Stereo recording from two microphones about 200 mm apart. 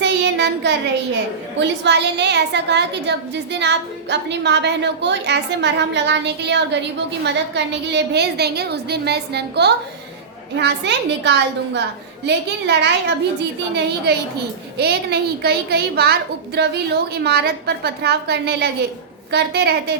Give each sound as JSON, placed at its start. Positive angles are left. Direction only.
{"t": 0.0, "sound": "child singing", "side_deg": -60}
{"t": 1.5, "sound": "a woman's voice", "side_deg": -60}